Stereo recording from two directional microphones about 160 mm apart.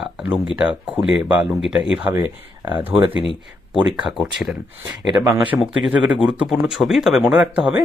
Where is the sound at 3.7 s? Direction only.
Centre (ahead or behind).